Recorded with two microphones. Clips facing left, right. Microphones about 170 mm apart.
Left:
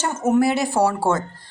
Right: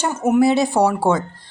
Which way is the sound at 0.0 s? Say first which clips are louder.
Right 2 dB; 15° right (ahead or behind).